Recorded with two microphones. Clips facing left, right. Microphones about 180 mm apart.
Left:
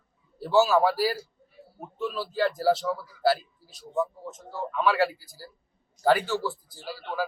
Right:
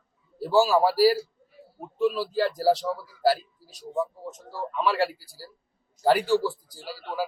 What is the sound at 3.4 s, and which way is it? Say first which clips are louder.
Speech: right 3 dB; 40° right (ahead or behind).